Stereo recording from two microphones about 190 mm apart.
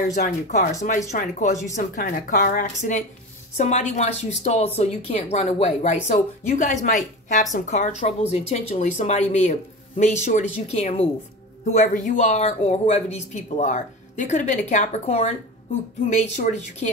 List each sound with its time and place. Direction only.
0.1 s speech: 40° left (ahead or behind)